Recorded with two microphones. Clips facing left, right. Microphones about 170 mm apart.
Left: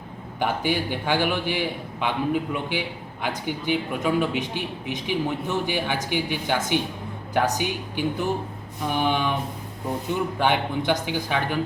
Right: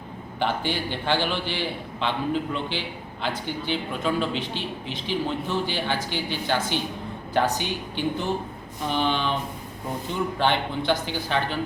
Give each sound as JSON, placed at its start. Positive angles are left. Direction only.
{"t": 0.3, "sound": "a man's voice", "side_deg": 10}
{"t": 10.3, "sound": "a man's voice", "side_deg": 10}